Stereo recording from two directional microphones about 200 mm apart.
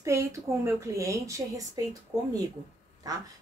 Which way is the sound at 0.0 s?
15° right (ahead or behind).